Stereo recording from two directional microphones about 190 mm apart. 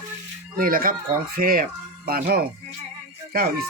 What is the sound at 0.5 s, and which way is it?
Speech, 50° right (ahead or behind).